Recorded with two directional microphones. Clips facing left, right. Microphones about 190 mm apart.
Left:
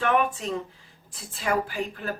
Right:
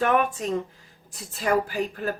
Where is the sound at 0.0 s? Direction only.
40° right (ahead or behind).